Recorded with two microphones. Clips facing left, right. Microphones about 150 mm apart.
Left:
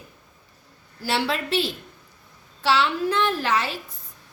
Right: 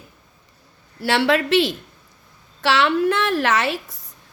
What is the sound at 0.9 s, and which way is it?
A woman's voice, 75° right (ahead or behind).